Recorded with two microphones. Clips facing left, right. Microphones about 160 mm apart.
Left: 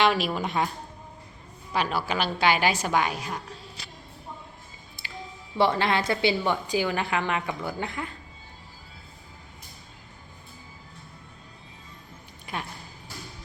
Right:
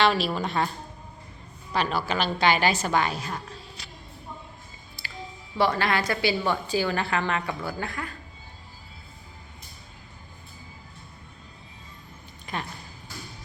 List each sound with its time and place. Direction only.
0.0 s a woman's voice: 15° left (ahead or behind)
1.7 s a woman's voice: 10° left (ahead or behind)
5.0 s music: 20° left (ahead or behind)
5.5 s a woman's voice: 25° left (ahead or behind)
12.5 s speech: 10° left (ahead or behind)